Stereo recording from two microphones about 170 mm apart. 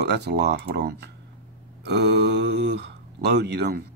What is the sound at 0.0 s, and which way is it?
Speech, 80° right.